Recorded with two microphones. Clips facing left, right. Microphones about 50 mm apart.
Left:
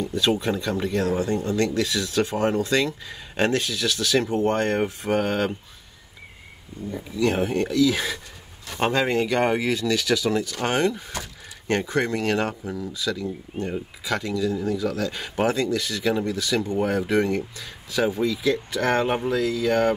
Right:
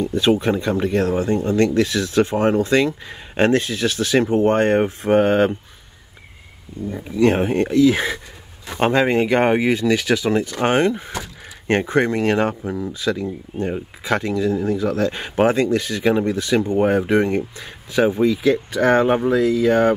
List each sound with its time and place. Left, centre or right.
0.0 s speech: right
6.9 s speech: right